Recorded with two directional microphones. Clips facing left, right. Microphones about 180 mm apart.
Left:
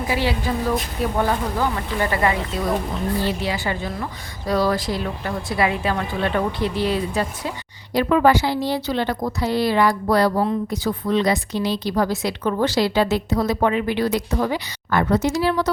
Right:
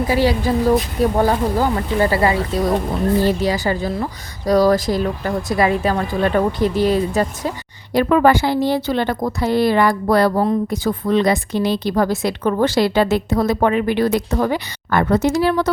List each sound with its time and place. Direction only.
0.1 s a woman's voice: 40° right (ahead or behind)